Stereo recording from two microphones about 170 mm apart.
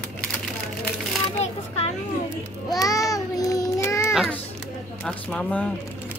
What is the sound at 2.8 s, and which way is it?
Child singing, 20° left (ahead or behind).